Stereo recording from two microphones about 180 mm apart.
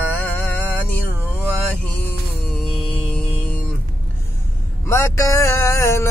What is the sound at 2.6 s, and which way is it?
Music, 5° left (ahead or behind).